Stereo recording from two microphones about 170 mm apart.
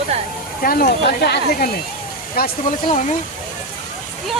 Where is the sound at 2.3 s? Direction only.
60° left (ahead or behind).